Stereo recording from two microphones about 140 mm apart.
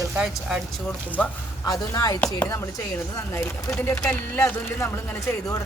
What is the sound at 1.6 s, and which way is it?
A woman's voice, 25° left (ahead or behind).